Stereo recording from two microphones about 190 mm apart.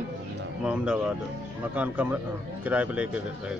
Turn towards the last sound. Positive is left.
turn(degrees=-5)  # may be behind; listen again after turning